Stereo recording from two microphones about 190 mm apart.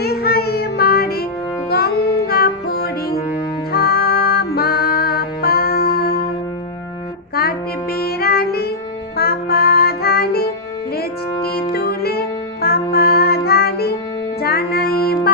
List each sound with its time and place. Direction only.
0.0 s music: 55° left (ahead or behind)
7.9 s music: 55° left (ahead or behind)
11.7 s music: 55° left (ahead or behind)